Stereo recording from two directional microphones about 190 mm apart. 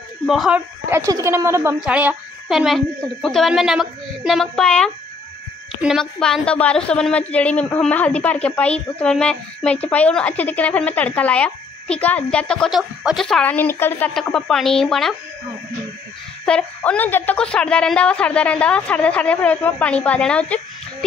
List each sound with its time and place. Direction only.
0.3 s a woman's voice: centre (ahead or behind)
0.8 s a woman's voice: 15° right (ahead or behind); by 15.1 s centre (ahead or behind)
16.4 s a woman's voice: 5° left (ahead or behind)